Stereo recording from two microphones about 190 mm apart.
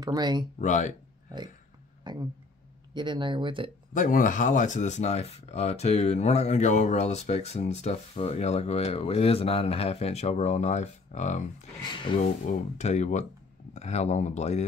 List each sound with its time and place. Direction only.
0.0 s speech: 20° right (ahead or behind)
0.6 s speech: 40° left (ahead or behind)
2.1 s speech: 25° right (ahead or behind)
3.9 s speech: 45° left (ahead or behind)
11.9 s speech: 25° left (ahead or behind)
12.7 s speech: 35° left (ahead or behind)